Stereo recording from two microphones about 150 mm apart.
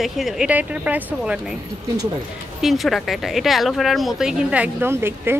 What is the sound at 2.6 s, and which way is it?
Speech, centre (ahead or behind).